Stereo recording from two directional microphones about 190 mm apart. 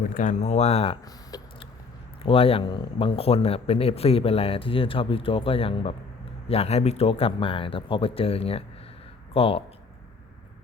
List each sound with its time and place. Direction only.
0.1 s speech: 45° left (ahead or behind)
1.0 s a sound: 20° left (ahead or behind)
2.2 s speech: 30° left (ahead or behind)